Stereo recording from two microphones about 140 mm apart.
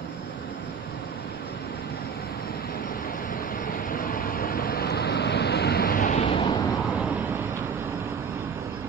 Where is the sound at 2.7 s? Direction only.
90° left.